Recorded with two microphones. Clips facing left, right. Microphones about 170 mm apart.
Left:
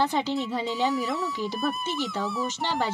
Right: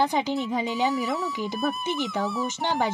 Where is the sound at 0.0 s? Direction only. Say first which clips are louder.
Right 1 dB; 15° right (ahead or behind).